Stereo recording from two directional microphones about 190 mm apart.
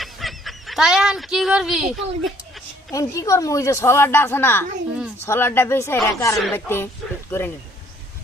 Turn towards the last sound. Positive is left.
turn(degrees=15)  # may be behind; listen again after turning